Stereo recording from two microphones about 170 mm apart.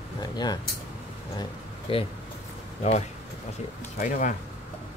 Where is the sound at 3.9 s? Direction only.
50° left (ahead or behind).